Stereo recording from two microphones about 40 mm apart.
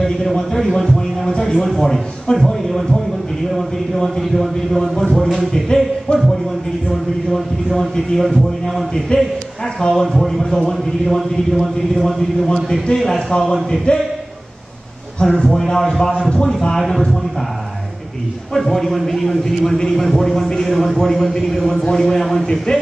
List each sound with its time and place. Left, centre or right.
0.0 s a man's voice: centre
6.9 s speech: centre
9.1 s speech: left
9.8 s a man's voice: centre
10.0 s speech: centre
12.2 s a man's voice: centre
13.9 s a man's voice: left
15.2 s a man's voice: centre
16.3 s speech: left
16.7 s a man's voice: centre
18.5 s a man's voice: centre